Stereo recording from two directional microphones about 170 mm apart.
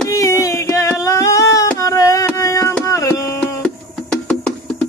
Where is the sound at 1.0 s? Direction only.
20° left (ahead or behind).